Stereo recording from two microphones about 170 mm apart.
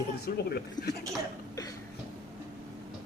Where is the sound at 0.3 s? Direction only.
70° left (ahead or behind).